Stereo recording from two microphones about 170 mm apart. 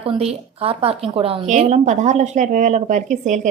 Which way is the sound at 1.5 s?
40° right (ahead or behind).